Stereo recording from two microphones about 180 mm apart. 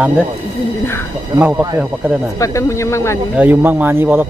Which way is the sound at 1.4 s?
10° right (ahead or behind).